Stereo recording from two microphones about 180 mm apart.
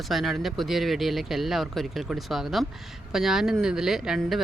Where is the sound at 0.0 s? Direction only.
Centre (ahead or behind).